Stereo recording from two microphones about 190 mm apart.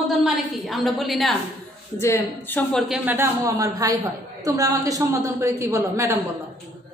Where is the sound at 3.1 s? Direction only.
15° right (ahead or behind).